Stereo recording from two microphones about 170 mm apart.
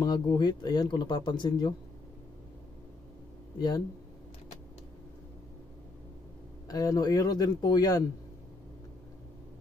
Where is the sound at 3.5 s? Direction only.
25° left (ahead or behind).